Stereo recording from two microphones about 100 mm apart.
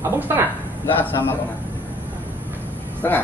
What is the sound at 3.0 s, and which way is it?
Speech, 25° left (ahead or behind).